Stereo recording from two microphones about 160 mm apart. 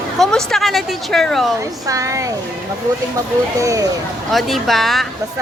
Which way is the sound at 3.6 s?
20° right (ahead or behind).